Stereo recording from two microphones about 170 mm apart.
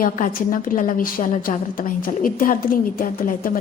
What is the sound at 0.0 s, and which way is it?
A woman's voice, 55° left (ahead or behind).